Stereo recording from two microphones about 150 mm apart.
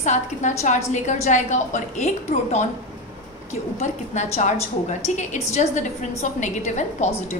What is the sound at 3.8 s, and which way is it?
A woman's voice, 50° left (ahead or behind).